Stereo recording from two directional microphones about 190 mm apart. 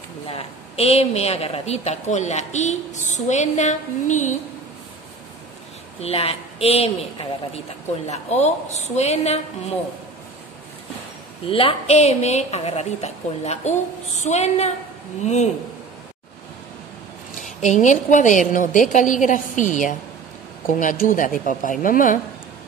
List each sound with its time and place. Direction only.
0.3 s a woman's voice: 30° left (ahead or behind)
5.9 s a woman's voice: 30° left (ahead or behind)
11.4 s a woman's voice: 30° left (ahead or behind)
17.4 s a woman's voice: 40° left (ahead or behind)